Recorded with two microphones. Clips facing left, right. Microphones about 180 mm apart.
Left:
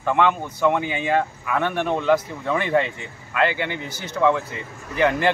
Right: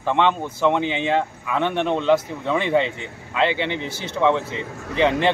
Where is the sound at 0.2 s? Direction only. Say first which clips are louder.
Even; 25° right (ahead or behind).